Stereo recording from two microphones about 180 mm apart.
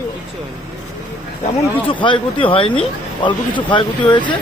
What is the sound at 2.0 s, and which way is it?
Speech, 25° left (ahead or behind).